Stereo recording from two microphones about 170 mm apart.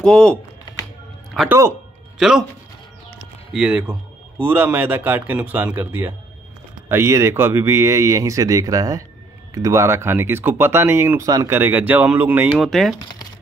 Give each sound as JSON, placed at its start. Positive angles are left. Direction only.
{"t": 0.0, "sound": "speech", "side_deg": 5}
{"t": 3.5, "sound": "speech", "side_deg": -5}
{"t": 12.5, "sound": "speech", "side_deg": 0}